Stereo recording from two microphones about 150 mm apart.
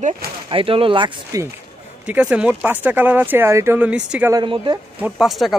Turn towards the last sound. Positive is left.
turn(degrees=-5)  # may be behind; listen again after turning